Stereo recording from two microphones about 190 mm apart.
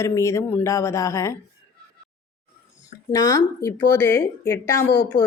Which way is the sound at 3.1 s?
15° left (ahead or behind).